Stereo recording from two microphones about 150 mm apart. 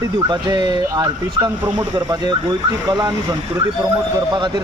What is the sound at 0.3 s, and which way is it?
Speech, 30° right (ahead or behind).